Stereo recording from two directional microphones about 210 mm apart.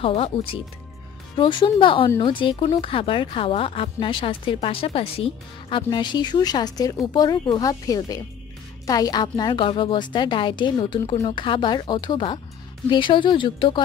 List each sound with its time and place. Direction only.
0.0 s speech: 25° left (ahead or behind)